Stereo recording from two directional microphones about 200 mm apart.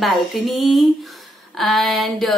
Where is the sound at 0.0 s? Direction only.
Centre (ahead or behind).